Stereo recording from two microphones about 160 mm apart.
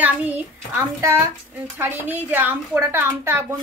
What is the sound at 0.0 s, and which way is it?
A child's voice, 10° right (ahead or behind).